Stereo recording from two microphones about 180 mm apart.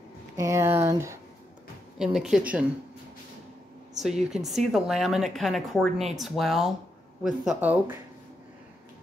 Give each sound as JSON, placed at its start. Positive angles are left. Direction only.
{"t": 0.4, "sound": "speech", "side_deg": -15}
{"t": 2.0, "sound": "a woman's voice", "side_deg": 0}
{"t": 4.0, "sound": "a woman's voice", "side_deg": -5}